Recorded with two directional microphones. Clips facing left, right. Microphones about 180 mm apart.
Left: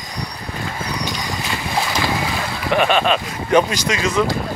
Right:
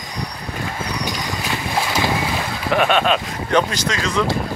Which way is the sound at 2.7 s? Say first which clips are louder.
Even; centre (ahead or behind).